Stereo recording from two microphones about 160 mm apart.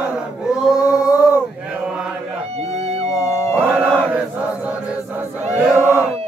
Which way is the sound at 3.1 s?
20° left (ahead or behind).